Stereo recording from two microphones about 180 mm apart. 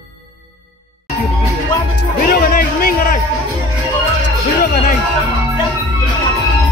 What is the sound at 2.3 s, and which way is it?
Music, 50° left (ahead or behind).